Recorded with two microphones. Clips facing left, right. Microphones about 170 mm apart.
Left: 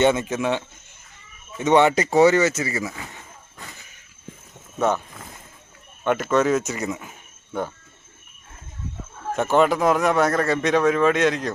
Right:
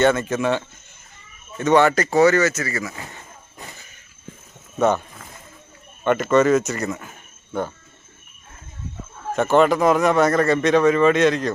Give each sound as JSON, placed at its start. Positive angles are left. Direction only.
{"t": 0.0, "sound": "speech", "side_deg": 15}
{"t": 1.5, "sound": "speech", "side_deg": 20}
{"t": 6.1, "sound": "speech", "side_deg": 5}
{"t": 9.3, "sound": "speech", "side_deg": 5}